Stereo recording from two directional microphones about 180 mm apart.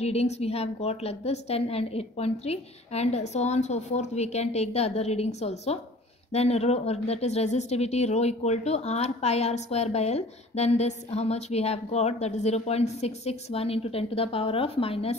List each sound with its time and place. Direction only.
0.0 s speech: 35° left (ahead or behind)